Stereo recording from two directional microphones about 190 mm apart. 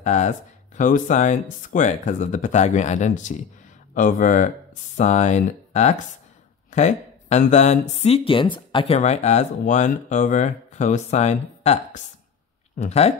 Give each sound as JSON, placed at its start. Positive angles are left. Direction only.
{"t": 0.0, "sound": "speech", "side_deg": 40}